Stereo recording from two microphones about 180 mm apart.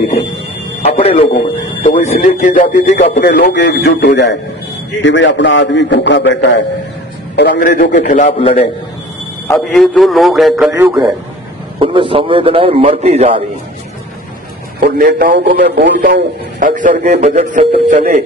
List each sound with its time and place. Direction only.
0.8 s a man's voice: 30° left (ahead or behind)
2.2 s speech: 45° left (ahead or behind); by 4.4 s 70° left (ahead or behind)
5.0 s a man's voice: 90° left
7.3 s speech: 65° left (ahead or behind)
8.0 s a man's voice: 40° left (ahead or behind)
9.5 s a man's voice: 5° left (ahead or behind); by 11.1 s 10° right (ahead or behind)
11.8 s a man's voice: 30° right (ahead or behind)
14.8 s a man's voice: 50° right (ahead or behind)
15.4 s a man's voice: 60° right (ahead or behind)
16.5 s a man's voice: 45° right (ahead or behind)